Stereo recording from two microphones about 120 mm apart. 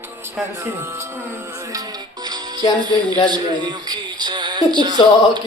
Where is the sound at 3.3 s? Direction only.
35° right (ahead or behind).